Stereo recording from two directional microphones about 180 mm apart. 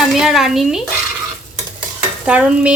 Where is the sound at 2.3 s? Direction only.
5° right (ahead or behind).